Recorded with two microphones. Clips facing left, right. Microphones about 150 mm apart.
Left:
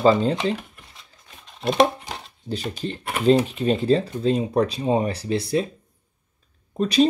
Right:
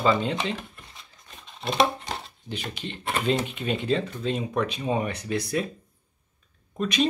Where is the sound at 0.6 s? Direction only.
5° left (ahead or behind).